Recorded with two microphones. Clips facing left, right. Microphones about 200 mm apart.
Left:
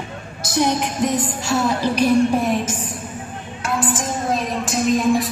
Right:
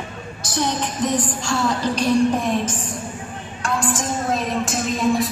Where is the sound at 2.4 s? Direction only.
5° left (ahead or behind).